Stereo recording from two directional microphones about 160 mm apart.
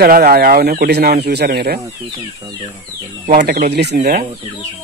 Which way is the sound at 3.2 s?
65° right (ahead or behind).